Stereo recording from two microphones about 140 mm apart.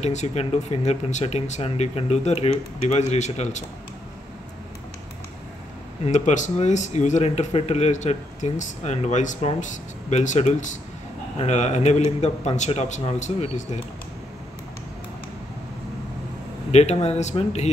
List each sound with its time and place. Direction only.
0.0 s speech: 55° left (ahead or behind)
6.0 s speech: 60° left (ahead or behind)
16.7 s speech: 50° left (ahead or behind)